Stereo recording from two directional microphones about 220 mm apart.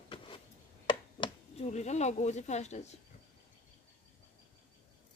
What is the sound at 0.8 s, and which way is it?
Speech, 25° left (ahead or behind).